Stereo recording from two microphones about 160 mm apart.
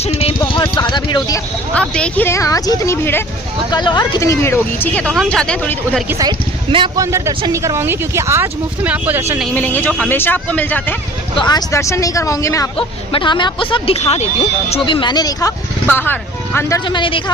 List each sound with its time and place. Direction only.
0.2 s a sound: 35° left (ahead or behind)
1.7 s speech: 5° left (ahead or behind)
3.7 s speech: 25° left (ahead or behind); by 6.0 s 5° left (ahead or behind)
6.7 s a man's voice: 35° right (ahead or behind)
6.9 s speech: 20° right (ahead or behind)
9.4 s speech: 10° left (ahead or behind)
11.3 s speech: 25° left (ahead or behind)
15.9 s speech: 10° left (ahead or behind); by 17.3 s 30° left (ahead or behind)